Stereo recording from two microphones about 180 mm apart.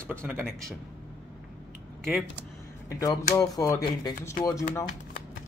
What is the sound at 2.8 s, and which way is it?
Speech, 20° left (ahead or behind).